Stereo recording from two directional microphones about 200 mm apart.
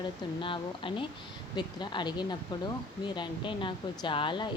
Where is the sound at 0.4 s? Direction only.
25° left (ahead or behind).